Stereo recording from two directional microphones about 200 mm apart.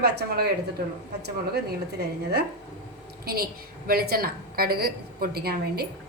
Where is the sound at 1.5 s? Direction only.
55° right (ahead or behind).